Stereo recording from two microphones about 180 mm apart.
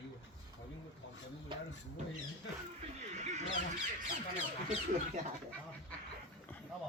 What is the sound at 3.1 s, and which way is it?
Bird, 40° right (ahead or behind).